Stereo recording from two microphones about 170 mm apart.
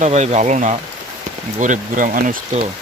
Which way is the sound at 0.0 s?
40° right (ahead or behind).